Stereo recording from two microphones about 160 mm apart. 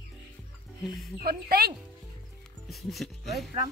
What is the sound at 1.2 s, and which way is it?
Speech, 75° right (ahead or behind).